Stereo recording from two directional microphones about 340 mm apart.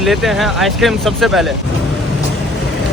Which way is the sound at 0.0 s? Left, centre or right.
Centre.